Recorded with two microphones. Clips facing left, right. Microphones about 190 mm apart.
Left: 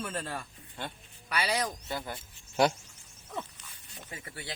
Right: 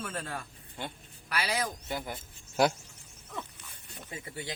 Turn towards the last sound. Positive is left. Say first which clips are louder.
# right 3 dB
turn(degrees=-15)  # may be behind; listen again after turning